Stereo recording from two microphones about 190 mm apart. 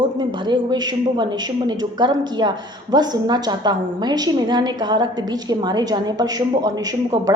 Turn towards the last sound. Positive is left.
turn(degrees=-20)  # may be behind; listen again after turning